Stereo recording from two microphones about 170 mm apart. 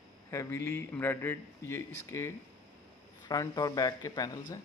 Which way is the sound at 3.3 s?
20° left (ahead or behind).